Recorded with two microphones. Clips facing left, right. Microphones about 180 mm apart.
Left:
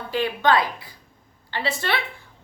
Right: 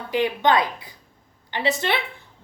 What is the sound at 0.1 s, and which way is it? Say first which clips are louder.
A woman's voice: right 1 dB; 20° right (ahead or behind).